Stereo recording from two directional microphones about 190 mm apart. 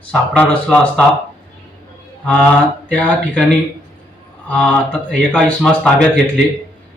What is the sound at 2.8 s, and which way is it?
Speech, 5° left (ahead or behind).